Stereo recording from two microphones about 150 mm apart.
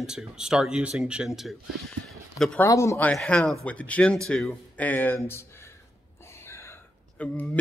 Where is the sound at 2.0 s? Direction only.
Centre (ahead or behind).